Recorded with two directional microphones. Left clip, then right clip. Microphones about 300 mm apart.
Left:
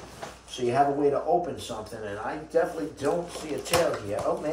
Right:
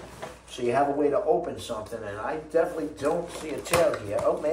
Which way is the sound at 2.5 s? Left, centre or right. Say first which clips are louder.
Even; centre.